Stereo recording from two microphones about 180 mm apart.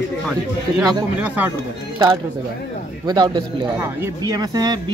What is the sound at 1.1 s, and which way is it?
Speech, 10° right (ahead or behind).